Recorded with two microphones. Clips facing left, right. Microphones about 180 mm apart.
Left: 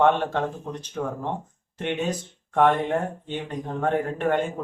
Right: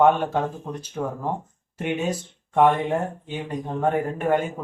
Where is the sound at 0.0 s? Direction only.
10° right (ahead or behind).